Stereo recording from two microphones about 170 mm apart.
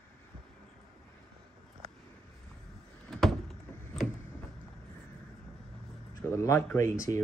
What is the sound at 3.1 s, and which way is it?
Door, centre (ahead or behind).